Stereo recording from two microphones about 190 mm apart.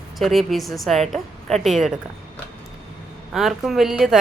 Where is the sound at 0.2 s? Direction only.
Centre (ahead or behind).